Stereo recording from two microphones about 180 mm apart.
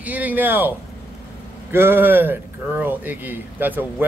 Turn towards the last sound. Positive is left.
turn(degrees=-10)  # may be behind; listen again after turning